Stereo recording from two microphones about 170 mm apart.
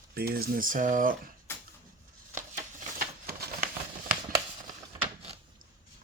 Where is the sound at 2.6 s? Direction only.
50° right (ahead or behind).